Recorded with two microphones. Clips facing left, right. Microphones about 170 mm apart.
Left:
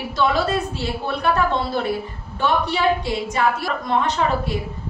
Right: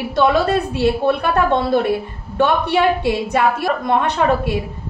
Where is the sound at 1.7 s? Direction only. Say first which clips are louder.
Right 6 dB; 60° right (ahead or behind).